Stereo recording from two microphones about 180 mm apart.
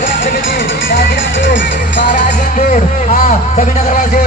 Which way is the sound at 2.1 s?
45° left (ahead or behind).